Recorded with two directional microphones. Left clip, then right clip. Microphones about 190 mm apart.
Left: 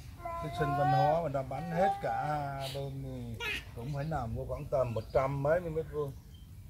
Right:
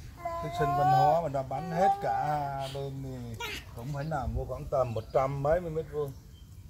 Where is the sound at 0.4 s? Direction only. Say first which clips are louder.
Right 4 dB; 40° right (ahead or behind).